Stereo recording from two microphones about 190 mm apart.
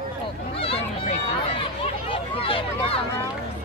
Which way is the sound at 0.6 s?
30° left (ahead or behind).